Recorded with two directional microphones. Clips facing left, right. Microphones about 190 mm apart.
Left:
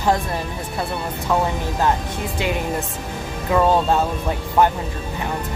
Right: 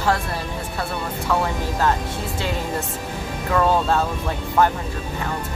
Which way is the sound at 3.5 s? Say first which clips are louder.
Left 2 dB; 15° left (ahead or behind).